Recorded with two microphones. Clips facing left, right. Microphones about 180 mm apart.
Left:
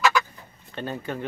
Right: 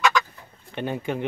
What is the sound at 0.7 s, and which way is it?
Speech, 15° right (ahead or behind).